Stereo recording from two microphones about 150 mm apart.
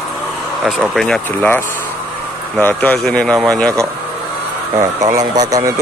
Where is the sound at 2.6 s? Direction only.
10° left (ahead or behind).